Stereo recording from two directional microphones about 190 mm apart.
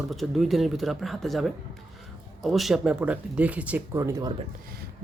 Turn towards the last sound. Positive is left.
turn(degrees=-15)  # may be behind; listen again after turning